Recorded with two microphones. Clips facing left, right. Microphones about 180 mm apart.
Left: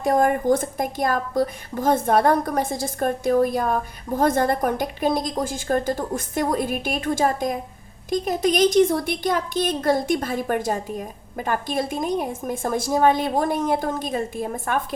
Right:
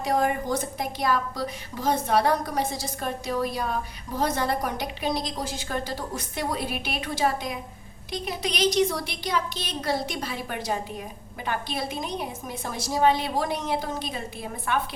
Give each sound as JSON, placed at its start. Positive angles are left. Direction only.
{"t": 0.0, "sound": "a woman's voice", "side_deg": 50}